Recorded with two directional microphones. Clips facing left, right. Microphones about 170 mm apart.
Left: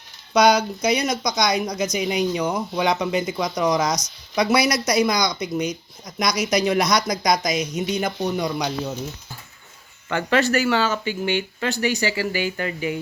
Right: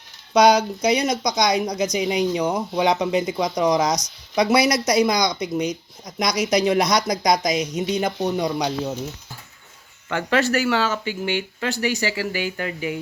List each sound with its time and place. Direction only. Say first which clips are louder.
0.3 s speech: right 1 dB; 30° right (ahead or behind)
10.1 s speech: left 1 dB; 5° right (ahead or behind)